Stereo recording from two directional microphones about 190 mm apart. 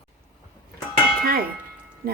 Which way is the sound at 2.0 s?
50° right (ahead or behind).